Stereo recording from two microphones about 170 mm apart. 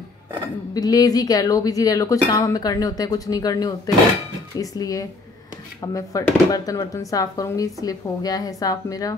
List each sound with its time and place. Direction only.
0.7 s speech: 20° left (ahead or behind)